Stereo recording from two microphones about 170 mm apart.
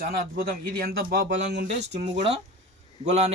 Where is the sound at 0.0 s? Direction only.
60° right (ahead or behind).